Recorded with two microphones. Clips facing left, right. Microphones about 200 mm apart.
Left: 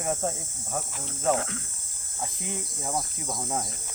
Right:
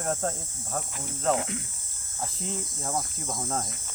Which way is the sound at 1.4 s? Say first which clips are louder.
Right 1 dB; 15° right (ahead or behind).